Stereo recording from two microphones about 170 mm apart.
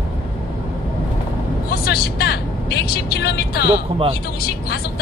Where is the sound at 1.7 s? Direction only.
65° left (ahead or behind).